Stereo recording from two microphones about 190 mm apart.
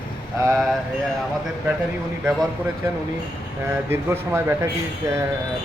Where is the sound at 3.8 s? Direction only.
15° right (ahead or behind).